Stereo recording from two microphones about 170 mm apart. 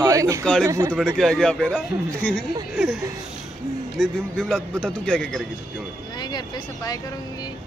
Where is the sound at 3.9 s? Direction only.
Centre (ahead or behind).